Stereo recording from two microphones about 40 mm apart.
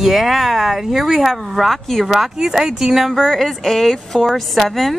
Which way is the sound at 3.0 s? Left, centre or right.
Centre.